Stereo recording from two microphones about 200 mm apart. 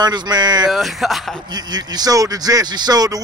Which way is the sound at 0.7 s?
Centre (ahead or behind).